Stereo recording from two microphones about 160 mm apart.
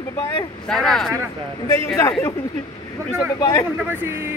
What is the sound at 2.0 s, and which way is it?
Speech, 15° left (ahead or behind).